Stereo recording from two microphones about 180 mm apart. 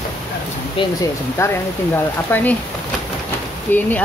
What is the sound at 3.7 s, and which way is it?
Speech, 10° left (ahead or behind).